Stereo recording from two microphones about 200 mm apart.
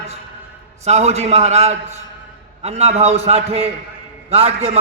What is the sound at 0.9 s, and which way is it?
A man's voice, 35° right (ahead or behind).